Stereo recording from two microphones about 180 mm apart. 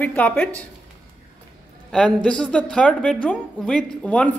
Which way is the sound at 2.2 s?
5° left (ahead or behind).